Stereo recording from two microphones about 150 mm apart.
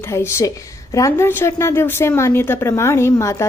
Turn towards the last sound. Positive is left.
turn(degrees=20)  # may be behind; listen again after turning